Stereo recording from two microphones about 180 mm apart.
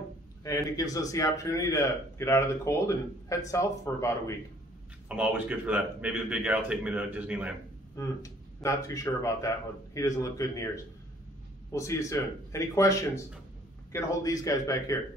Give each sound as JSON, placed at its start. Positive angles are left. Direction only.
{"t": 0.4, "sound": "a man's voice", "side_deg": 20}
{"t": 5.0, "sound": "a man's voice", "side_deg": -5}
{"t": 7.9, "sound": "a man's voice", "side_deg": 15}
{"t": 11.7, "sound": "a man's voice", "side_deg": 15}